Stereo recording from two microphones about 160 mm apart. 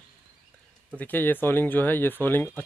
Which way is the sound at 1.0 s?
10° left (ahead or behind).